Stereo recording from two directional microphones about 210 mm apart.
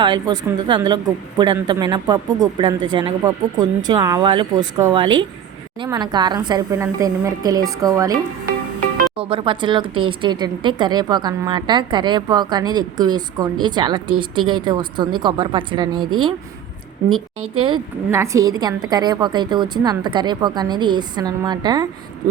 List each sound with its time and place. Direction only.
0.0 s a woman's voice: 20° right (ahead or behind)
18.1 s a woman's voice: 15° right (ahead or behind)